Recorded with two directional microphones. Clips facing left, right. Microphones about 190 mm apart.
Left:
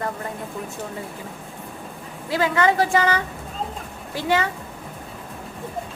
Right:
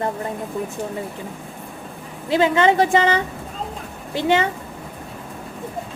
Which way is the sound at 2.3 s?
25° right (ahead or behind).